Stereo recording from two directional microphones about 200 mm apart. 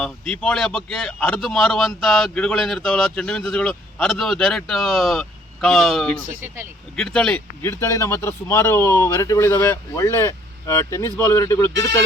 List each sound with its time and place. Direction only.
0.0 s speech: 5° left (ahead or behind)
6.2 s speech: 40° right (ahead or behind)
6.9 s speech: 5° left (ahead or behind)